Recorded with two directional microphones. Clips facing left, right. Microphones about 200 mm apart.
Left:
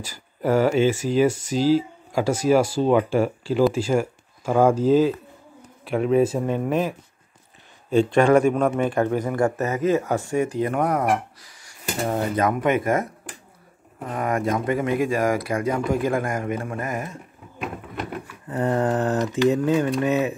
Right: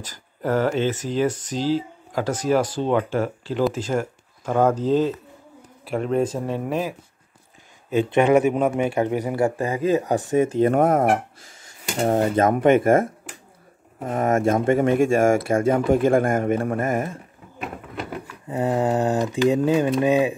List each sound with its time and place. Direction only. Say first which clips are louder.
0.0 s speech: left 2 dB; 10° left (ahead or behind)
7.9 s speech: left 1 dB; 20° right (ahead or behind)
11.0 s speech: right 3 dB; 50° right (ahead or behind)
11.4 s a sound: left 2 dB; 25° right (ahead or behind)
12.2 s speech: right 3 dB; 45° right (ahead or behind)
12.5 s speech: right 5 dB; 30° right (ahead or behind)
12.8 s speech: right 5 dB; 50° right (ahead or behind)
14.7 s speech: right 5 dB; 25° right (ahead or behind)
16.3 s speech: right 5 dB; 50° right (ahead or behind)
16.9 s speech: right 5 dB; 30° right (ahead or behind)
18.5 s speech: right 1 dB; 10° right (ahead or behind)